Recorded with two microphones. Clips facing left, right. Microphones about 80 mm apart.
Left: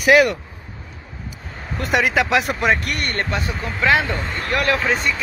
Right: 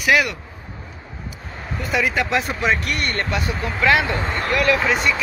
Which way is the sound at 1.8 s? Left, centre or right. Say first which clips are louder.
Left 3 dB; left.